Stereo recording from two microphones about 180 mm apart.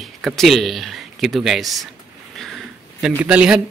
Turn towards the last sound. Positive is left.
turn(degrees=-5)  # may be behind; listen again after turning